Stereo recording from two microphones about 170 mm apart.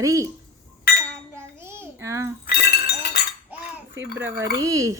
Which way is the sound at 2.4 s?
75° left (ahead or behind).